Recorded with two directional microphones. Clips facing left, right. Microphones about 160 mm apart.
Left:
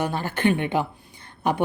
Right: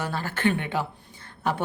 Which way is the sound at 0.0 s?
20° left (ahead or behind).